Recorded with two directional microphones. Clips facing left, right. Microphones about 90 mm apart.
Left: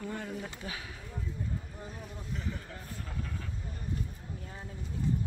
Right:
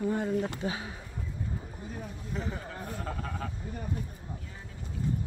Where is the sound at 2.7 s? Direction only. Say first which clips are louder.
Right 7 dB; 60° right (ahead or behind).